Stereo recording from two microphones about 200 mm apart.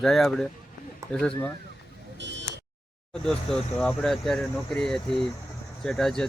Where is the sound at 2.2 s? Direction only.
60° right (ahead or behind).